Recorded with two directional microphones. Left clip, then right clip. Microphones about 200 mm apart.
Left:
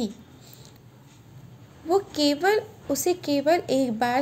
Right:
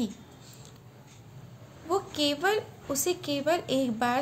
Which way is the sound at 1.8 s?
15° left (ahead or behind).